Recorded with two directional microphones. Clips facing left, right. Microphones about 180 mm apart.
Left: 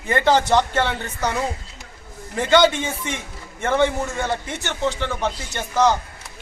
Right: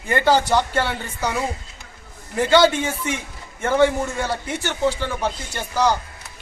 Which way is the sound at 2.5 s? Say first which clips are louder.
Even; 10° right (ahead or behind).